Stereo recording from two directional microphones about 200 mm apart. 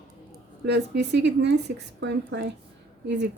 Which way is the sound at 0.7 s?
60° right (ahead or behind).